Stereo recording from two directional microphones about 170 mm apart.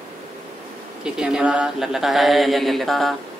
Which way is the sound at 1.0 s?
5° right (ahead or behind).